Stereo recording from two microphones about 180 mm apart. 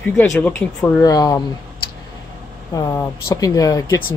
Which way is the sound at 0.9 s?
20° left (ahead or behind).